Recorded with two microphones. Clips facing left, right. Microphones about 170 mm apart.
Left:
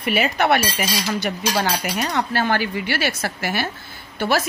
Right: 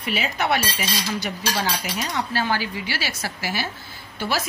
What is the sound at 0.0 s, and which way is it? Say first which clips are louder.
Speech: left 5 dB; 60° left (ahead or behind).